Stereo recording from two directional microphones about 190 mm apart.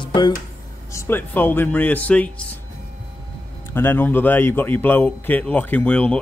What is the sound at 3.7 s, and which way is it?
Speech, 10° left (ahead or behind).